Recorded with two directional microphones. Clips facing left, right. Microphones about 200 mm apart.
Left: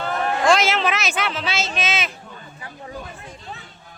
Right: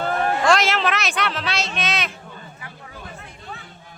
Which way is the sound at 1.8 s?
Centre (ahead or behind).